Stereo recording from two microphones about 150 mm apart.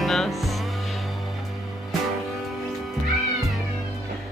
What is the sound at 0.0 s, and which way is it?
Music, centre (ahead or behind).